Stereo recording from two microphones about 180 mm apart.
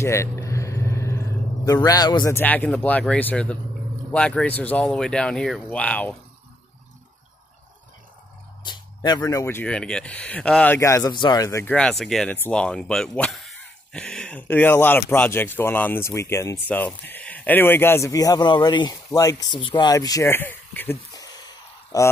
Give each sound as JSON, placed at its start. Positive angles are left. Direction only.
{"t": 0.0, "sound": "a sound", "side_deg": 15}
{"t": 1.7, "sound": "a man's voice", "side_deg": 20}
{"t": 2.3, "sound": "speech", "side_deg": 10}
{"t": 8.6, "sound": "speech", "side_deg": 25}
{"t": 11.6, "sound": "speech", "side_deg": 5}